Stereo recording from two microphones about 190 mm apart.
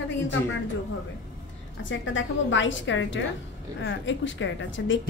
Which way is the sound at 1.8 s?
75° left (ahead or behind).